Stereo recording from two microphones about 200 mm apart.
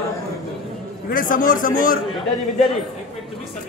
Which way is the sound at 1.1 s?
45° left (ahead or behind).